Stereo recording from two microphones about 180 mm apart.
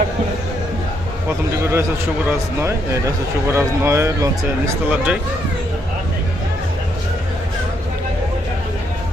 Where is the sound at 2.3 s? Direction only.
15° right (ahead or behind).